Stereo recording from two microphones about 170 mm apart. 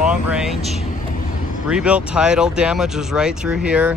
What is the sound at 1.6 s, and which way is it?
Speech, 5° right (ahead or behind).